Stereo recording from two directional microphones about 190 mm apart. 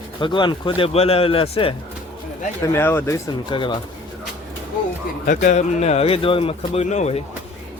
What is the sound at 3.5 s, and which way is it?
Speech, 25° left (ahead or behind).